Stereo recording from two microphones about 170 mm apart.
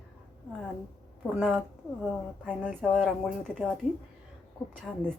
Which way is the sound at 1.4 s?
10° right (ahead or behind).